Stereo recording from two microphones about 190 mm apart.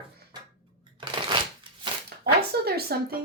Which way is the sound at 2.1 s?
55° right (ahead or behind).